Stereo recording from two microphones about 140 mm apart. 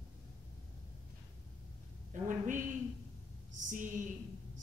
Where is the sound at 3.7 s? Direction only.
70° right (ahead or behind).